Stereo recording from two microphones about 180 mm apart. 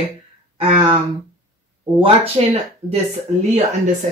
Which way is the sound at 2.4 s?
35° right (ahead or behind).